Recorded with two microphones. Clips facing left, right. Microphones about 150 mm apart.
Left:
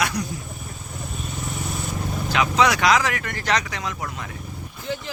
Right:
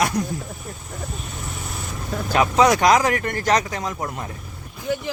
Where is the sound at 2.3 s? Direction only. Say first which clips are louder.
Right 4 dB; 40° right (ahead or behind).